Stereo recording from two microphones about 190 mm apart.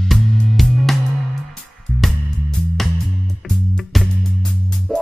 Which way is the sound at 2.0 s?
Centre (ahead or behind).